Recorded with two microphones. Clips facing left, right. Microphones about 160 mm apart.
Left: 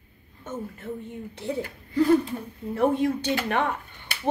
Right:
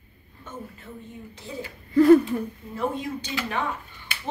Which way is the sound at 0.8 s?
55° left (ahead or behind).